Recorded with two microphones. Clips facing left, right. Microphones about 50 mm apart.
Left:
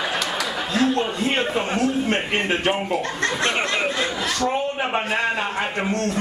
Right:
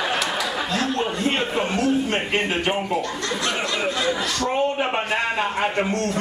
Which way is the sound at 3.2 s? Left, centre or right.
Left.